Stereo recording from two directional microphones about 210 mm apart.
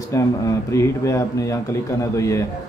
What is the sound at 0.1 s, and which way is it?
Speech, 15° left (ahead or behind).